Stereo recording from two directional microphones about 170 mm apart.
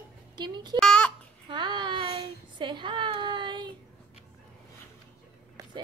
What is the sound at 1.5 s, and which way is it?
Child singing, 25° right (ahead or behind).